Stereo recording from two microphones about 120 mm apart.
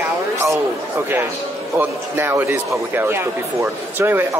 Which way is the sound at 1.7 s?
20° right (ahead or behind).